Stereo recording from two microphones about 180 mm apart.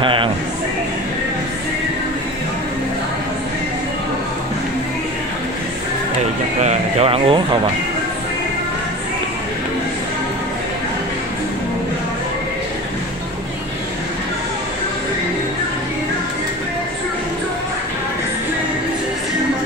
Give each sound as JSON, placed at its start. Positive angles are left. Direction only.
{"t": 0.0, "sound": "speech", "side_deg": -30}
{"t": 6.6, "sound": "speech", "side_deg": -40}